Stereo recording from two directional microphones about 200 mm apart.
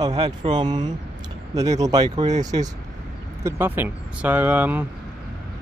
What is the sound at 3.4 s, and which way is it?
Speech, 10° right (ahead or behind).